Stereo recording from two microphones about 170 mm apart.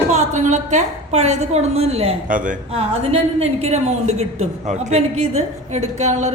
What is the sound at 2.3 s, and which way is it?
Speech, 50° right (ahead or behind).